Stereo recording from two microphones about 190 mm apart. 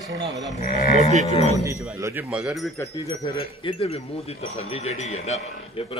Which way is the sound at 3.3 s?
30° left (ahead or behind).